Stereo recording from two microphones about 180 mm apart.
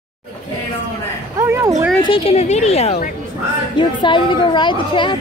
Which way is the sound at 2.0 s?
30° left (ahead or behind).